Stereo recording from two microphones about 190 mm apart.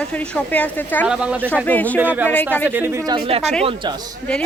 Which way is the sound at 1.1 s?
5° right (ahead or behind).